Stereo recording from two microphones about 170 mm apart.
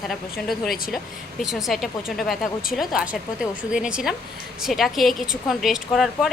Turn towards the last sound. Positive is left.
turn(degrees=0)  # may be behind; listen again after turning